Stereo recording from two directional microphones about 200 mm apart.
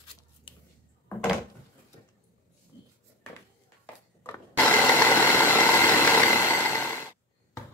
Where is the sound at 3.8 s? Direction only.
10° left (ahead or behind).